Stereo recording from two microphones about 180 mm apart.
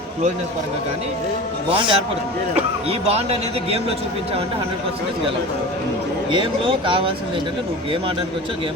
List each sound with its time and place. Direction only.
1.7 s speech: 30° right (ahead or behind)
3.1 s a man's voice: 35° right (ahead or behind)
6.3 s speech: 30° right (ahead or behind)